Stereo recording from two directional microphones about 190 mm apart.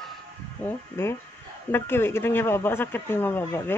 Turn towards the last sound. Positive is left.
turn(degrees=10)  # may be behind; listen again after turning